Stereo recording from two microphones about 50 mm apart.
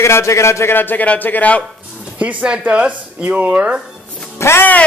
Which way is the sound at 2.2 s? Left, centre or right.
Right.